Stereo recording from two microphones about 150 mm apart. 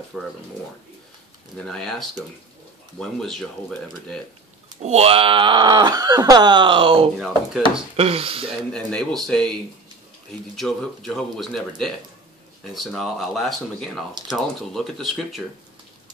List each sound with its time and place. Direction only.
0.1 s speech: 5° left (ahead or behind)
1.6 s speech: 5° left (ahead or behind)
4.8 s speech: 45° right (ahead or behind)
8.7 s speech: 5° left (ahead or behind)